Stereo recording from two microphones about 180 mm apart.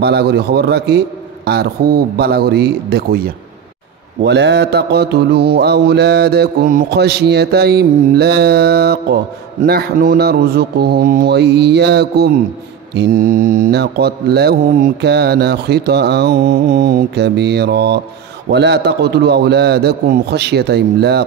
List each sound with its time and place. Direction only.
0.0 s mantra: 65° right (ahead or behind)
4.2 s mantra: 70° right (ahead or behind)